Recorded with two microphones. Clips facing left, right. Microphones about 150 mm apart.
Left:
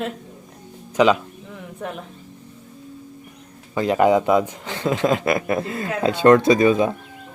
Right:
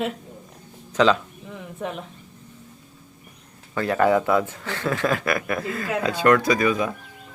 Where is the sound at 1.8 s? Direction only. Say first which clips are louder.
Even; centre (ahead or behind).